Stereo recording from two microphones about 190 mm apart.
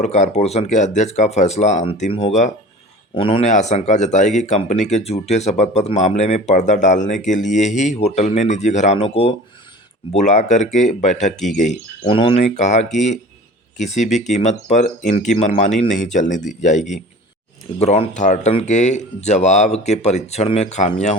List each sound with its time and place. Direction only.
0.0 s speech: 35° left (ahead or behind)